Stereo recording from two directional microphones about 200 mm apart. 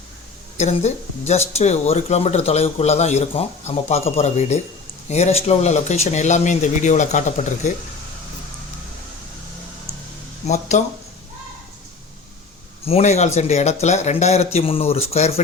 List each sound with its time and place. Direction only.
0.5 s a woman's voice: 35° left (ahead or behind)
10.4 s speech: 35° left (ahead or behind)
12.8 s speech: 30° left (ahead or behind)